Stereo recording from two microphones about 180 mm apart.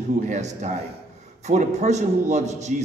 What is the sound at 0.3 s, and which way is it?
A man's voice, 40° right (ahead or behind).